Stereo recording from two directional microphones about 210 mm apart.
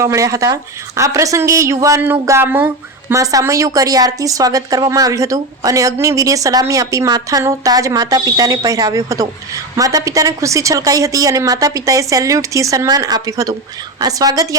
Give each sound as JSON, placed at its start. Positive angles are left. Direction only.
{"t": 0.0, "sound": "a woman's voice", "side_deg": -15}